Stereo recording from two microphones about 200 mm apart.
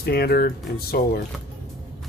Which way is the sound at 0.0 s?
50° left (ahead or behind).